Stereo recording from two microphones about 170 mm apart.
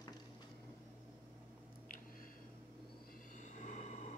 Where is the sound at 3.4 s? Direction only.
45° left (ahead or behind).